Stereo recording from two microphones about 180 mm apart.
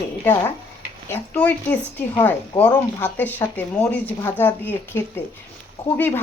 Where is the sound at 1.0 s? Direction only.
10° left (ahead or behind).